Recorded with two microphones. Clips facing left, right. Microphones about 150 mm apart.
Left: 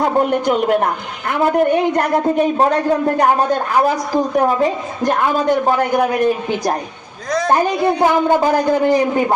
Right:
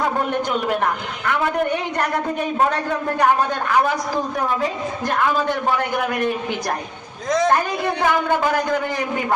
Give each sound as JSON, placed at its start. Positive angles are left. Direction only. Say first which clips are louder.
{"t": 0.0, "sound": "a man's voice", "louder": "left 6 dB", "side_deg": 40}
{"t": 4.6, "sound": "a woman's voice", "louder": "left 6 dB", "side_deg": 20}
{"t": 5.6, "sound": "a man's voice", "louder": "left 6 dB", "side_deg": 45}
{"t": 7.5, "sound": "a man's voice", "louder": "left 5 dB", "side_deg": 35}